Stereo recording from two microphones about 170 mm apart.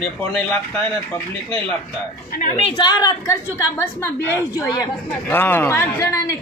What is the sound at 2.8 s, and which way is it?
A woman's voice, 25° left (ahead or behind).